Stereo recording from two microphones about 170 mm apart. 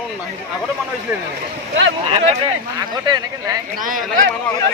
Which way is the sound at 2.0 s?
30° right (ahead or behind).